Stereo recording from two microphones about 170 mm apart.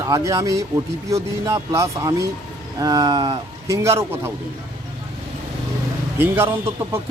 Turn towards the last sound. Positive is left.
turn(degrees=-15)  # may be behind; listen again after turning